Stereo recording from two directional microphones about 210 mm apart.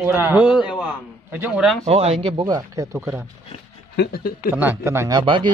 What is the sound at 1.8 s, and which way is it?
Speech, 30° right (ahead or behind).